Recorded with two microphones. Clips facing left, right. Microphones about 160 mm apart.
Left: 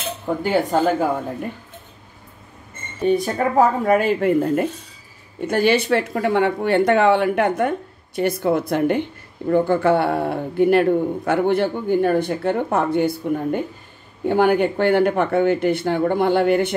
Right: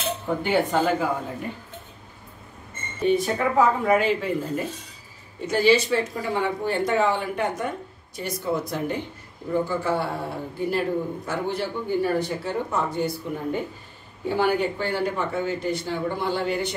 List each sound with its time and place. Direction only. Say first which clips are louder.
0.4 s speech: left 4 dB; 45° left (ahead or behind)
3.1 s a man's voice: left 3 dB; 45° left (ahead or behind); by 16.7 s 60° left (ahead or behind)